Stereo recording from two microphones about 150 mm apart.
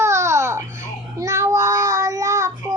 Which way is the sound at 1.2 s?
20° right (ahead or behind).